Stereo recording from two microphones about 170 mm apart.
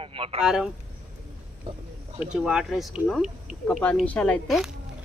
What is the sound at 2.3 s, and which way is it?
Speech, 5° right (ahead or behind).